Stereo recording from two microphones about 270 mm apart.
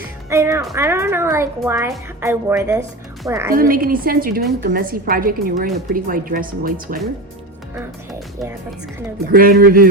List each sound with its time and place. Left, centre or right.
0.3 s speech: centre
3.5 s speech: right
9.3 s speech: right